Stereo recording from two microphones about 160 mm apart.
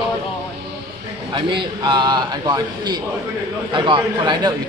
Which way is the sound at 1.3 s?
30° right (ahead or behind).